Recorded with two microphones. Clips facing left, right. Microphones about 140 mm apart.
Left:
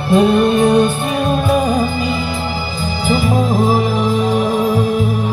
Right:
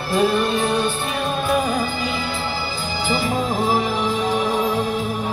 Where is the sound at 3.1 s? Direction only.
10° left (ahead or behind).